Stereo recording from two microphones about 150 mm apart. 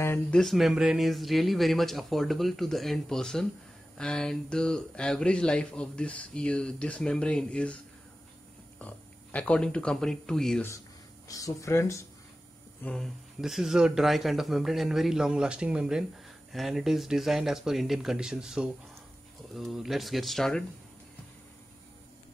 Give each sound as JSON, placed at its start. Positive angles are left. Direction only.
{"t": 0.0, "sound": "speech", "side_deg": 15}
{"t": 0.4, "sound": "speech", "side_deg": 0}
{"t": 11.2, "sound": "speech", "side_deg": 20}
{"t": 12.8, "sound": "speech", "side_deg": 5}